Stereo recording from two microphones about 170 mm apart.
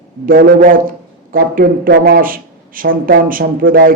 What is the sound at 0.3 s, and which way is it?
A man's voice, 60° right (ahead or behind).